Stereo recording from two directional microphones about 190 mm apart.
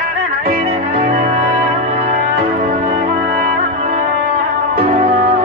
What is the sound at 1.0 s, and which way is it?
Music, 50° right (ahead or behind).